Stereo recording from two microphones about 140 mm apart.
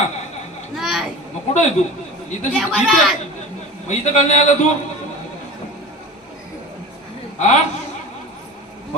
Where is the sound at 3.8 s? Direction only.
55° left (ahead or behind).